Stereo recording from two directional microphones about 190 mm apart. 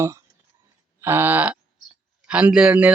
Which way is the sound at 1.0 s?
10° right (ahead or behind).